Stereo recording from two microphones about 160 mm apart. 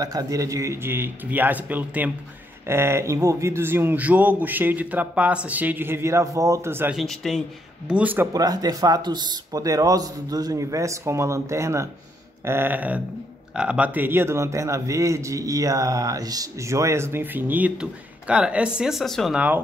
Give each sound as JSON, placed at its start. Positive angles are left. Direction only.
{"t": 0.0, "sound": "a man's voice", "side_deg": -25}
{"t": 7.0, "sound": "speech", "side_deg": 0}
{"t": 7.9, "sound": "a man's voice", "side_deg": -10}
{"t": 8.3, "sound": "a man's voice", "side_deg": -25}